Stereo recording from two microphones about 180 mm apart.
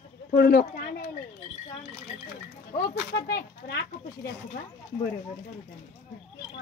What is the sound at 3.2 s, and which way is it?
Speech, 70° left (ahead or behind).